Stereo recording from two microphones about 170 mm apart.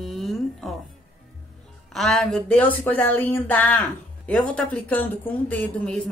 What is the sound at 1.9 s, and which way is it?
Speech, centre (ahead or behind).